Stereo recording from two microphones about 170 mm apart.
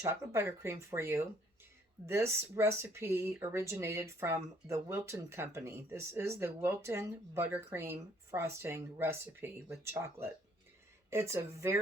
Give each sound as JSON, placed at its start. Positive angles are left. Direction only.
{"t": 0.0, "sound": "speech", "side_deg": -15}